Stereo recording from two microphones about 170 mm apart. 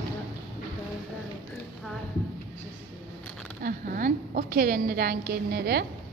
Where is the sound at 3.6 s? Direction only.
55° right (ahead or behind).